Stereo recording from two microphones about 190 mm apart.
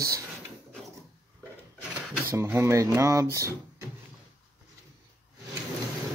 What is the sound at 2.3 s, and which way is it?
Speech, 15° right (ahead or behind).